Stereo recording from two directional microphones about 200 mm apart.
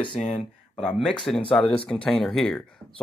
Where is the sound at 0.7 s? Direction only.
Centre (ahead or behind).